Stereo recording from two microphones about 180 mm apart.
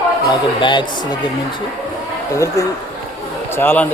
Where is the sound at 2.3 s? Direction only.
15° left (ahead or behind).